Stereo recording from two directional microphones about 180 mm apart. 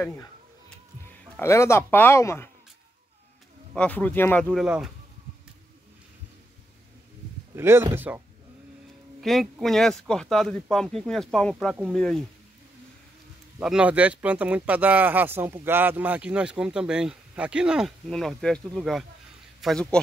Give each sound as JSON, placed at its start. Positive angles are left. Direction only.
{"t": 1.0, "sound": "a man's voice", "side_deg": 15}
{"t": 3.7, "sound": "speech", "side_deg": 10}
{"t": 7.5, "sound": "speech", "side_deg": -15}
{"t": 9.2, "sound": "speech", "side_deg": 0}
{"t": 13.6, "sound": "speech", "side_deg": -5}